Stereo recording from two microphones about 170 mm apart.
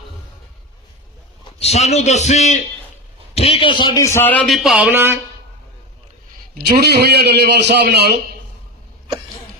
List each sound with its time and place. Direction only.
1.5 s a man's voice: 35° left (ahead or behind); by 5.2 s 15° right (ahead or behind)
6.5 s a man's voice: 65° right (ahead or behind)